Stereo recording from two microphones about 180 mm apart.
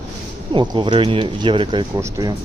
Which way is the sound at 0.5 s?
25° right (ahead or behind).